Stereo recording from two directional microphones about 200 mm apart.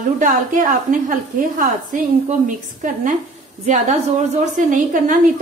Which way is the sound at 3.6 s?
35° right (ahead or behind).